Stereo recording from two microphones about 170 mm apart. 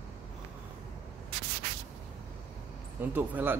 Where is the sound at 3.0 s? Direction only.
10° right (ahead or behind).